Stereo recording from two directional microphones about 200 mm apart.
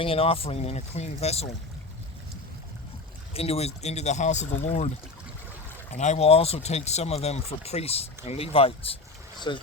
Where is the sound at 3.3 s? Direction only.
30° left (ahead or behind).